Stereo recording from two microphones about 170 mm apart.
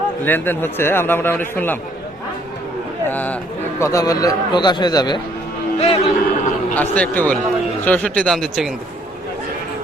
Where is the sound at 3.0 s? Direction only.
10° left (ahead or behind); by 5.2 s 25° left (ahead or behind).